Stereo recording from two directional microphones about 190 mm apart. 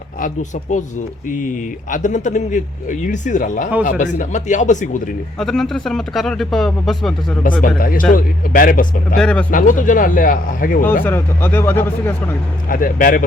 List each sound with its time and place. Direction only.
1.3 s speech: 45° left (ahead or behind)
5.4 s speech: centre (ahead or behind)
7.8 s speech: 50° left (ahead or behind)
9.1 s speech: 5° left (ahead or behind)
9.5 s speech: 45° left (ahead or behind)
11.0 s speech: 10° left (ahead or behind)
12.6 s speech: 50° left (ahead or behind)